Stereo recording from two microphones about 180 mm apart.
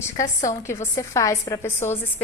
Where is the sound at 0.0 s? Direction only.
15° left (ahead or behind).